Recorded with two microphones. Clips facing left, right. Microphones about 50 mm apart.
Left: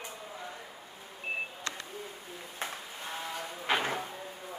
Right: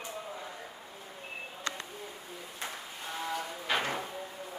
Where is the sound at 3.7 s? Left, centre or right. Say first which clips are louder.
Left 2 dB; left.